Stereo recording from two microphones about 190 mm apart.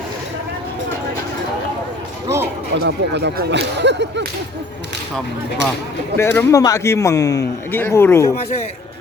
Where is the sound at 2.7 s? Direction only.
65° right (ahead or behind).